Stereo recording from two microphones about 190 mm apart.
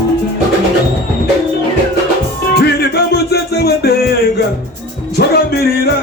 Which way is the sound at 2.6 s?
60° left (ahead or behind).